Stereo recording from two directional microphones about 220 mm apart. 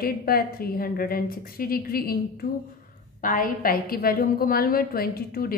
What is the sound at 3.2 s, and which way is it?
A woman's voice, 40° left (ahead or behind).